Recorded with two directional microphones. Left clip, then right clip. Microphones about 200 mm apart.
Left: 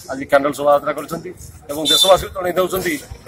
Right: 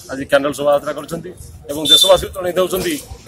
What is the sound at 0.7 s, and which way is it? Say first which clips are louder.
Speech: left 1 dB; 30° right (ahead or behind).